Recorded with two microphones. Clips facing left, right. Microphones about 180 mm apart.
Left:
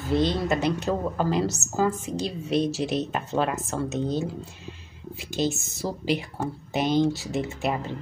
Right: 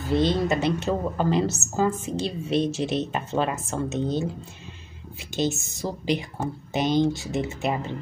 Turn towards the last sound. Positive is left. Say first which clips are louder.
# right 1 dB
turn(degrees=0)  # may be behind; listen again after turning